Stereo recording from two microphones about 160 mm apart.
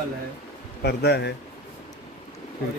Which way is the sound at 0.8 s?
90° left.